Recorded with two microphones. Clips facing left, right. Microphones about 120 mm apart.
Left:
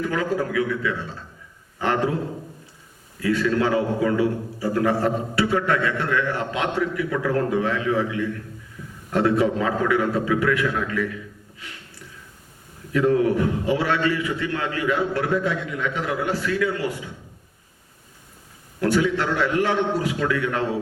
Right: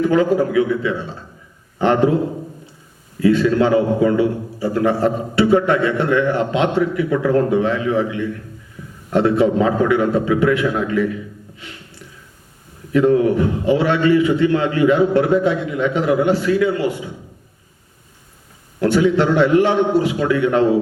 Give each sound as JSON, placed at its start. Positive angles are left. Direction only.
{"t": 0.0, "sound": "a man's voice", "side_deg": -25}
{"t": 18.8, "sound": "a man's voice", "side_deg": -25}